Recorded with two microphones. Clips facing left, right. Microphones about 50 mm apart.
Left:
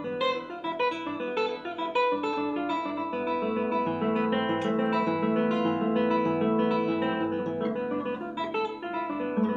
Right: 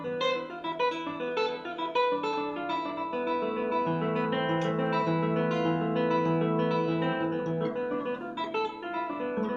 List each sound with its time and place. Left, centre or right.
0.2 s music: centre
2.0 s music: centre